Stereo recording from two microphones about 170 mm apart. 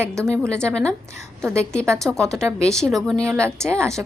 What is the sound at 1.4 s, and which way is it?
Speech, 15° right (ahead or behind).